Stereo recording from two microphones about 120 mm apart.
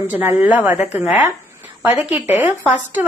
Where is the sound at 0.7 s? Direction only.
65° left (ahead or behind).